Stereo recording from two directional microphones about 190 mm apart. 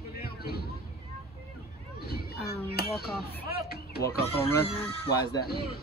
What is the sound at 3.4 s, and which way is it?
Speech, 55° left (ahead or behind).